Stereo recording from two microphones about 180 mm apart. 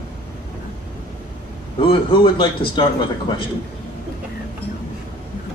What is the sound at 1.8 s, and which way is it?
Speech, 30° left (ahead or behind).